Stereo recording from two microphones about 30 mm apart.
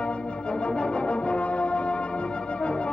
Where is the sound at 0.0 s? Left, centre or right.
Left.